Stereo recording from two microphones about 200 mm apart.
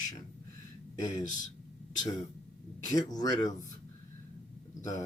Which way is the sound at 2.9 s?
20° left (ahead or behind).